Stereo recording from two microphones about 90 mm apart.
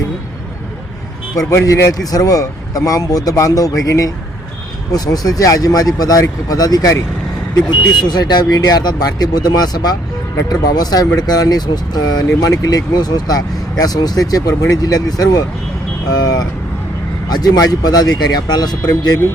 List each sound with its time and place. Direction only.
1.5 s speech: 35° left (ahead or behind)
8.0 s speech: 50° left (ahead or behind)